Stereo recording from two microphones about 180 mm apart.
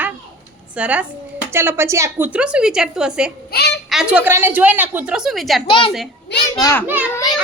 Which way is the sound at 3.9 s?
5° right (ahead or behind).